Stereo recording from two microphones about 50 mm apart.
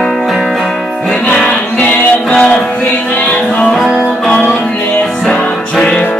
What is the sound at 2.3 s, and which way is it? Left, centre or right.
Music, left.